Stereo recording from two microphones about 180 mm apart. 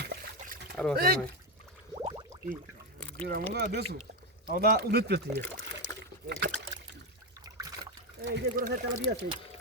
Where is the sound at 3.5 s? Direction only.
65° right (ahead or behind).